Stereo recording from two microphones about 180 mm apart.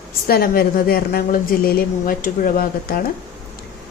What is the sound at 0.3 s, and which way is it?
A woman's voice, 55° left (ahead or behind).